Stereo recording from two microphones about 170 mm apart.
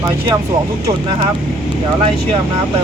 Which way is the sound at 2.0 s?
35° right (ahead or behind).